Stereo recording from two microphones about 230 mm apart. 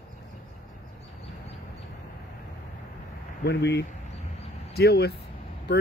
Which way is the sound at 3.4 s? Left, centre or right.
Left.